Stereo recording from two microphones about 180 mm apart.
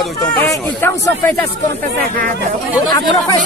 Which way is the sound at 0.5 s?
15° left (ahead or behind).